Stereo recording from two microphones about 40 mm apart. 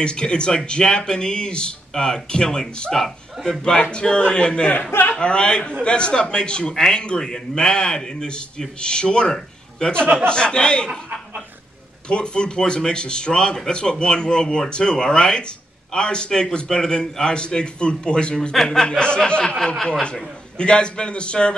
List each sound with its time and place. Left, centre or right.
0.0 s a man's voice: left
10.9 s speech: right
12.1 s a man's voice: left
18.5 s a man's voice: centre
18.9 s a man's voice: left